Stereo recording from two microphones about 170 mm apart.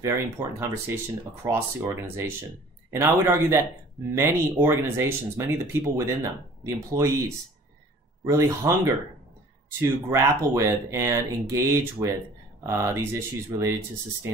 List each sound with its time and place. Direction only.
0.0 s speech: 15° right (ahead or behind)